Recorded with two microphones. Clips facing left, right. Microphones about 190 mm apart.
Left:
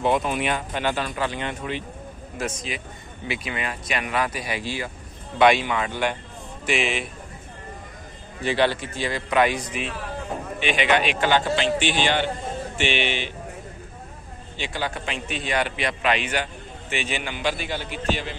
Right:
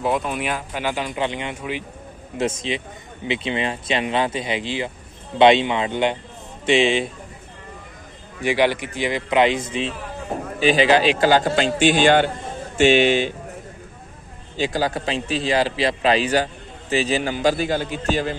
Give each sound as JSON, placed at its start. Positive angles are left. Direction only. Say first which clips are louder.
{"t": 0.0, "sound": "speech", "louder": "even", "side_deg": 0}
{"t": 2.3, "sound": "speech", "louder": "right 7 dB", "side_deg": -25}
{"t": 8.4, "sound": "a man's voice", "louder": "right 3 dB", "side_deg": -15}
{"t": 14.7, "sound": "a man's voice", "louder": "right 4 dB", "side_deg": -35}